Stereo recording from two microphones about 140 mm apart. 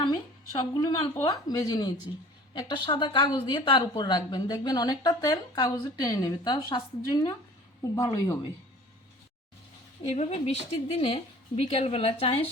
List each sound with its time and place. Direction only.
0.6 s a woman's voice: 30° left (ahead or behind)
10.1 s a woman's voice: 45° left (ahead or behind)